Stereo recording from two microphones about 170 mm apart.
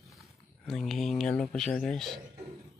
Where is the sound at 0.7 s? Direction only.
Centre (ahead or behind).